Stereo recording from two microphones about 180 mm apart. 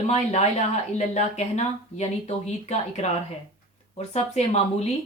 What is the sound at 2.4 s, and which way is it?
Speech, 40° left (ahead or behind).